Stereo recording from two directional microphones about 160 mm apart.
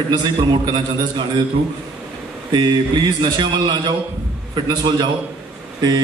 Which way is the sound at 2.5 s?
25° right (ahead or behind).